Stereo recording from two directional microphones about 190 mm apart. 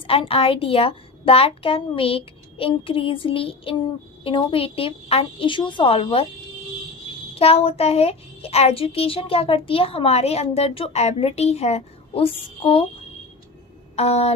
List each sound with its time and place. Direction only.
0.1 s a woman's voice: 30° left (ahead or behind)
7.3 s a child's voice: 30° left (ahead or behind)
13.9 s a sound: 35° left (ahead or behind)